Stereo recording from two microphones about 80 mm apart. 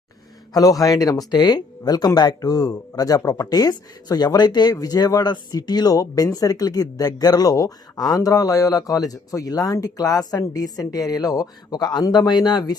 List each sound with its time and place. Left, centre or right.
0.5 s speech: left
1.3 s speech: left